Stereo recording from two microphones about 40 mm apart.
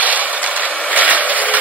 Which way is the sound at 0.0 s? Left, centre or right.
Right.